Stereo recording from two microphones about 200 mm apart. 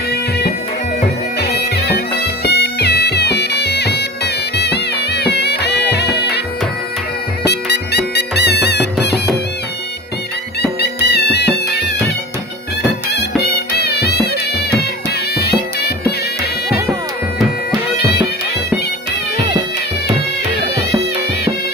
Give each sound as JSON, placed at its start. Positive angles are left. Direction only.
{"t": 1.4, "sound": "bagpipes", "side_deg": 55}
{"t": 7.4, "sound": "music", "side_deg": 55}
{"t": 10.8, "sound": "music", "side_deg": 55}
{"t": 13.1, "sound": "music", "side_deg": 55}